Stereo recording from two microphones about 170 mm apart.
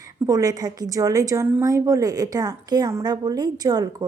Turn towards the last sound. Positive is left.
turn(degrees=-25)  # may be behind; listen again after turning